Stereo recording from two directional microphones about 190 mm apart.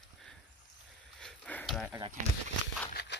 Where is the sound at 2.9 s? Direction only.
60° left (ahead or behind).